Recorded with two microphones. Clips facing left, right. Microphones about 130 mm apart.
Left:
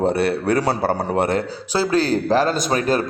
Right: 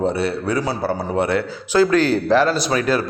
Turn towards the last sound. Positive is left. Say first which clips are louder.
# even
turn(degrees=40)  # may be behind; listen again after turning